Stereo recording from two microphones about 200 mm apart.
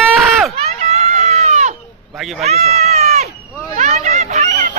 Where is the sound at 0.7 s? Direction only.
35° right (ahead or behind).